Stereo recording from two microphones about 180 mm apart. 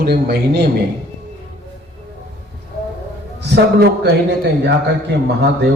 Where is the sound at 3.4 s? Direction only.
70° right (ahead or behind).